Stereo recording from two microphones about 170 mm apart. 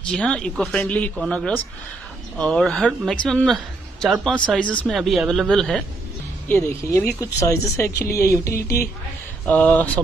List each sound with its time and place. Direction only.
0.0 s speech: 5° left (ahead or behind)
6.5 s speech: 15° left (ahead or behind)